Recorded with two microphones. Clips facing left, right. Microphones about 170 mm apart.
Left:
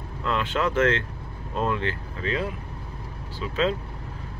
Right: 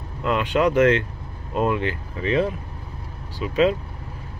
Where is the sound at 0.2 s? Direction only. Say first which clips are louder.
Right 5 dB; 15° right (ahead or behind).